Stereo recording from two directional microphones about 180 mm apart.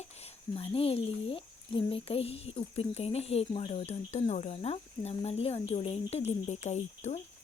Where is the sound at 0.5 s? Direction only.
30° left (ahead or behind).